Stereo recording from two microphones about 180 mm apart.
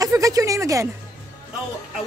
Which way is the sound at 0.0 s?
20° right (ahead or behind).